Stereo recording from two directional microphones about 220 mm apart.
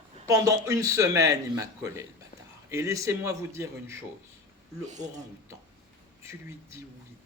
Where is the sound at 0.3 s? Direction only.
15° right (ahead or behind).